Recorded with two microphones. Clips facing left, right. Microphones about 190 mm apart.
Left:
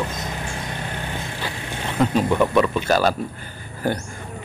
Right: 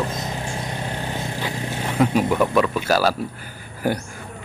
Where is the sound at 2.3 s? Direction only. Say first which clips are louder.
Left 1 dB; centre (ahead or behind).